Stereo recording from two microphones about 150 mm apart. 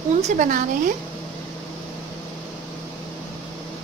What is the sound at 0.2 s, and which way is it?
Speech, 60° right (ahead or behind).